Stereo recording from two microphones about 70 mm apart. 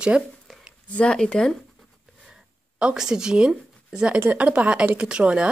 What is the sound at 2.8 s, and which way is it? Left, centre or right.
Speech, centre.